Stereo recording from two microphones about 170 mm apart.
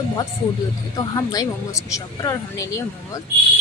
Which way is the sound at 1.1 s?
20° left (ahead or behind).